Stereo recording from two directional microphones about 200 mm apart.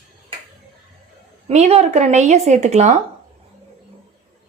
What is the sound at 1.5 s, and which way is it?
Speech, 35° right (ahead or behind).